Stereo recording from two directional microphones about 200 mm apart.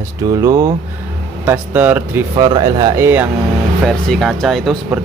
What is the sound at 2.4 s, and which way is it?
Speech, 20° right (ahead or behind).